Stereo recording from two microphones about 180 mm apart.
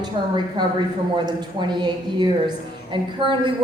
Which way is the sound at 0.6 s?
25° right (ahead or behind).